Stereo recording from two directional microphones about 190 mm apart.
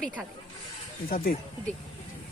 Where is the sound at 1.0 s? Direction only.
50° left (ahead or behind).